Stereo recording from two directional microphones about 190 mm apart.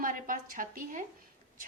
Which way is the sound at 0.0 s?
45° right (ahead or behind).